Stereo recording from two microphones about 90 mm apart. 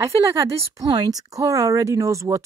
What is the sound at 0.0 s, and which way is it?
Speech, 40° right (ahead or behind).